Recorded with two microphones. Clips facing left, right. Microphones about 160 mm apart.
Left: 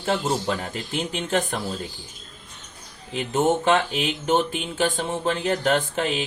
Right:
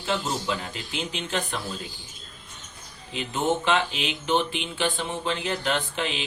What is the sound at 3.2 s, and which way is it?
Speech, 45° left (ahead or behind).